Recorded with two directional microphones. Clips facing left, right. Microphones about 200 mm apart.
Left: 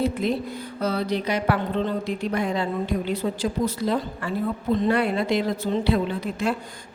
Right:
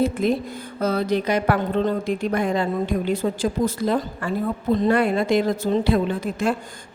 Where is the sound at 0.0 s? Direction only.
50° right (ahead or behind).